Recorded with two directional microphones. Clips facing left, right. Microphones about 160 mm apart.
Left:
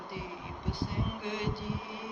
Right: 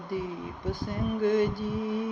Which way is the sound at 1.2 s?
45° right (ahead or behind).